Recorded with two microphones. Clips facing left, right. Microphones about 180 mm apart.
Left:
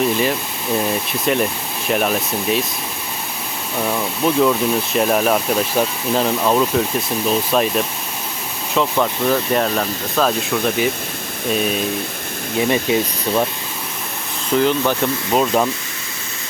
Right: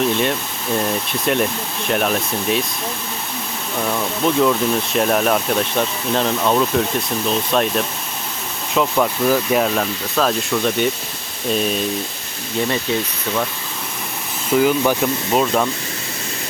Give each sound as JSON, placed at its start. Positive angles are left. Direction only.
{"t": 0.0, "sound": "speech", "side_deg": 0}
{"t": 3.8, "sound": "speech", "side_deg": 5}
{"t": 11.5, "sound": "speech", "side_deg": 5}
{"t": 12.5, "sound": "speech", "side_deg": 15}
{"t": 14.5, "sound": "speech", "side_deg": -5}